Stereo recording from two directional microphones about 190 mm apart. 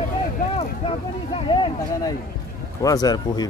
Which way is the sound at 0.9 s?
25° left (ahead or behind).